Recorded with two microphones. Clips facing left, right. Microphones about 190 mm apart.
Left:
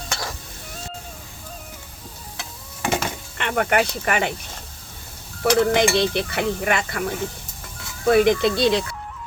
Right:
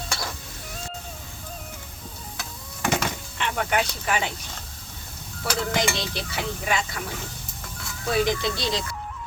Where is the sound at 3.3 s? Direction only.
60° left (ahead or behind).